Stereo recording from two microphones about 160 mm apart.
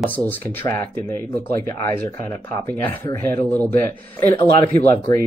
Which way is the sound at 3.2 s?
15° left (ahead or behind).